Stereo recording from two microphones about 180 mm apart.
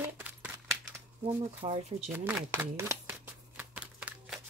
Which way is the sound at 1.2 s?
35° right (ahead or behind).